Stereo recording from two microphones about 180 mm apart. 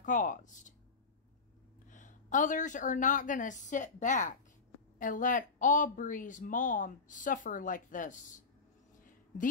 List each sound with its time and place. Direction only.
0.0 s speech: 45° left (ahead or behind)
1.9 s speech: 45° left (ahead or behind)